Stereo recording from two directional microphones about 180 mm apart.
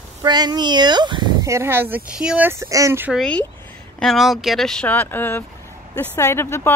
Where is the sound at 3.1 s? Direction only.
Centre (ahead or behind).